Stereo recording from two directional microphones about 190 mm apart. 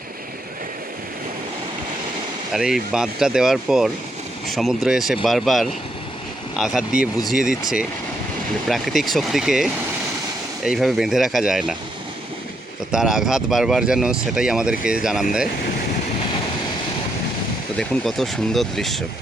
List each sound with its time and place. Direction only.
2.5 s speech: centre (ahead or behind)
8.6 s speech: centre (ahead or behind)
12.9 s speech: 5° right (ahead or behind)
17.7 s speech: centre (ahead or behind)